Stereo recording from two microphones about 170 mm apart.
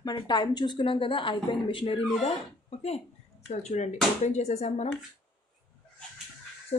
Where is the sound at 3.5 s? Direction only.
40° left (ahead or behind).